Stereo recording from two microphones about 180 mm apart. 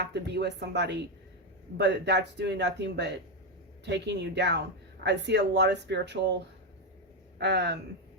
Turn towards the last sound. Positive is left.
turn(degrees=-70)  # may be behind; listen again after turning